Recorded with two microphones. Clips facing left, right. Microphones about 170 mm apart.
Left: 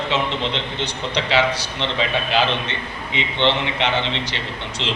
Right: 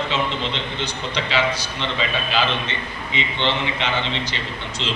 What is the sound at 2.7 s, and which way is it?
A man's voice, 60° left (ahead or behind).